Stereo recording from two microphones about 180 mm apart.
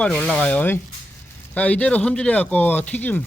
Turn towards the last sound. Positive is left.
turn(degrees=10)  # may be behind; listen again after turning